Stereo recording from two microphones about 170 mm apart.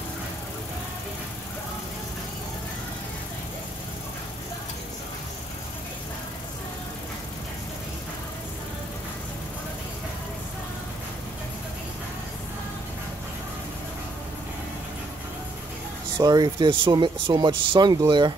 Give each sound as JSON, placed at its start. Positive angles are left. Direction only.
{"t": 16.2, "sound": "speech", "side_deg": -25}